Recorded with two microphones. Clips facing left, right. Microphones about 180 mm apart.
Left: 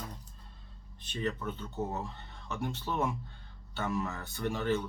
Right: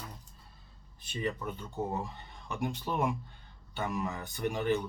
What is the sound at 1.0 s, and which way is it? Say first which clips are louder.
Speech: even; 10° right (ahead or behind).